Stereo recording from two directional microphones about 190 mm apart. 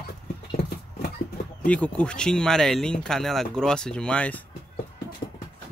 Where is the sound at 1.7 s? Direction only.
5° left (ahead or behind).